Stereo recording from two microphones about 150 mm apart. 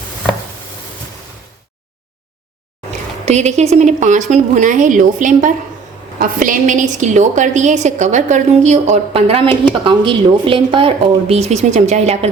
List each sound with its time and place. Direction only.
3.2 s a woman's voice: 45° right (ahead or behind)